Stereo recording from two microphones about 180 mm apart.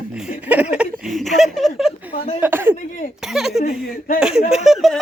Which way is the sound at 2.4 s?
10° right (ahead or behind).